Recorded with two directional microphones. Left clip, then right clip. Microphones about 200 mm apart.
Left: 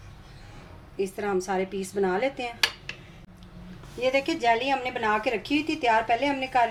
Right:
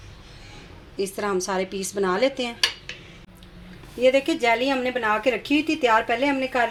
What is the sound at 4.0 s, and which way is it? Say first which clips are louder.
A woman's voice: right 5 dB; 35° right (ahead or behind).